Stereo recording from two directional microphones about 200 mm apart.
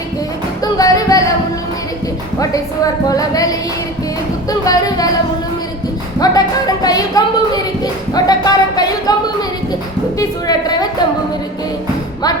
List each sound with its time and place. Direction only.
0.6 s music: 15° left (ahead or behind)
2.4 s a sound: 15° left (ahead or behind)
6.1 s speech: 20° left (ahead or behind)
10.2 s speech: 20° left (ahead or behind)